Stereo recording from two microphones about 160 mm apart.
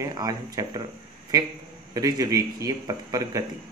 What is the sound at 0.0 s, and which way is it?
Speech, 25° right (ahead or behind).